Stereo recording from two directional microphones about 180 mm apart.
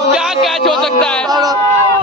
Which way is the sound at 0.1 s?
Centre (ahead or behind).